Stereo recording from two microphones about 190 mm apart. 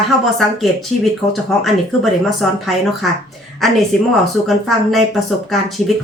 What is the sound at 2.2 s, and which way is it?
Speech, centre (ahead or behind).